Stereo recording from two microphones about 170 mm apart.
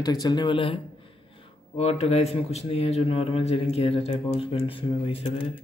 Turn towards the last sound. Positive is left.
turn(degrees=35)  # may be behind; listen again after turning